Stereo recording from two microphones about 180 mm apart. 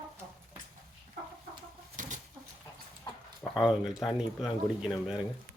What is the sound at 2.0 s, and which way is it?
Bird, 45° right (ahead or behind).